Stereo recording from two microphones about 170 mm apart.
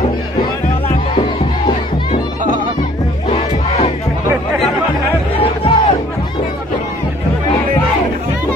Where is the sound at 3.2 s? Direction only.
40° left (ahead or behind).